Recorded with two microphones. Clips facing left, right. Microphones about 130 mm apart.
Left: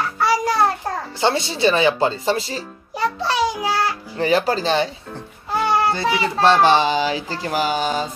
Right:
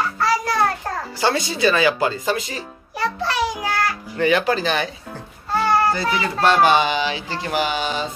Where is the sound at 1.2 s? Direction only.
25° left (ahead or behind).